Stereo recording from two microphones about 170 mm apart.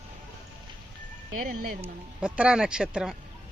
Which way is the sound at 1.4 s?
55° right (ahead or behind).